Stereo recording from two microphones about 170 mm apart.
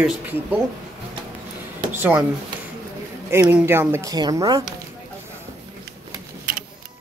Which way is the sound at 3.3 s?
15° right (ahead or behind).